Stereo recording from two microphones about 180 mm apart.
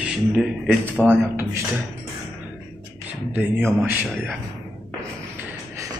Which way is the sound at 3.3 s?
10° right (ahead or behind).